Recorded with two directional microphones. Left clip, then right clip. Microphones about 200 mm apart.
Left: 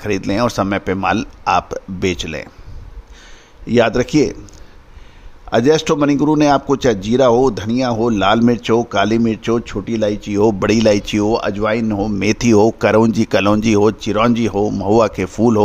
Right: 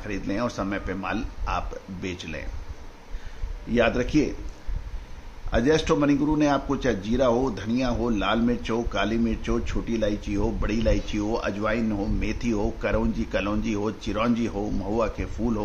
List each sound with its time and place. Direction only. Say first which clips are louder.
0.0 s a man's voice: left 11 dB; 60° left (ahead or behind)
3.6 s a man's voice: left 9 dB; 60° left (ahead or behind)
5.5 s a man's voice: left 9 dB; 55° left (ahead or behind)